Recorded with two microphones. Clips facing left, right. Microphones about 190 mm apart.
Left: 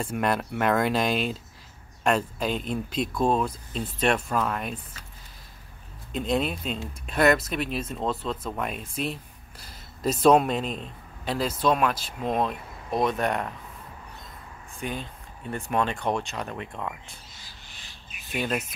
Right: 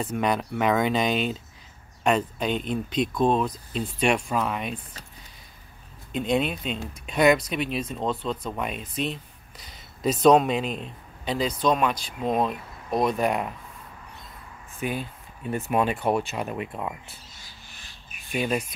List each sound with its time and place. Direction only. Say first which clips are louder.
0.1 s speech: even; centre (ahead or behind)
6.1 s speech: right 2 dB; centre (ahead or behind)
10.2 s speech: right 1 dB; centre (ahead or behind)
14.8 s speech: right 3 dB; 10° right (ahead or behind)
18.3 s speech: right 2 dB; centre (ahead or behind)